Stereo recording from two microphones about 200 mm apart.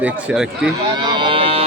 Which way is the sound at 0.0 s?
5° right (ahead or behind).